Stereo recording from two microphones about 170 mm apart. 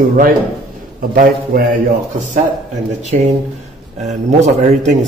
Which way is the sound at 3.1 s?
45° right (ahead or behind).